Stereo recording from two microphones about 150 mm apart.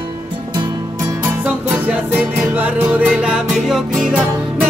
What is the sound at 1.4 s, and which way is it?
Music, 10° right (ahead or behind).